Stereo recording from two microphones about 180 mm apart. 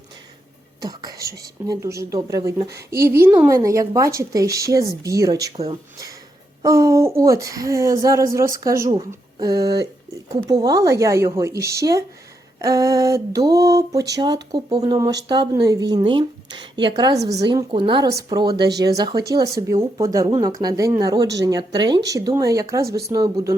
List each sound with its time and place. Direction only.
0.8 s a woman's voice: 20° right (ahead or behind)